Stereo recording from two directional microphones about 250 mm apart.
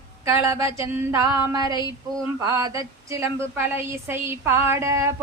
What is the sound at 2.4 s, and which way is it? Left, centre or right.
Speech, centre.